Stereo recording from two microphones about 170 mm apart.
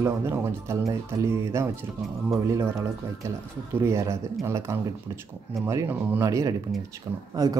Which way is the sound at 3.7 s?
15° right (ahead or behind).